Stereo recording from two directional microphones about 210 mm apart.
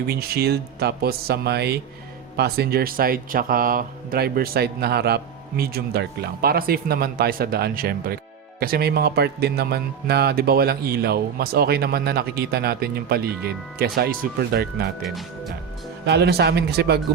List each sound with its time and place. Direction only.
0.1 s speech: 50° right (ahead or behind)
15.0 s speech: centre (ahead or behind)
16.0 s speech: 50° right (ahead or behind)